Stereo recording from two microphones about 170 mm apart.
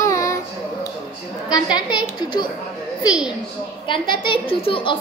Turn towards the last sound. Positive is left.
turn(degrees=30)  # may be behind; listen again after turning